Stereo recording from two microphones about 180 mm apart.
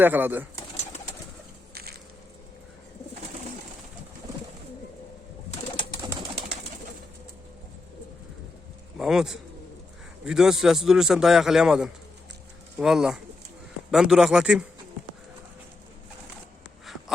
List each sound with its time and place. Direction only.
0.0 s speech: 10° right (ahead or behind)
1.7 s a sound: 60° right (ahead or behind)
9.0 s a man's voice: 5° right (ahead or behind)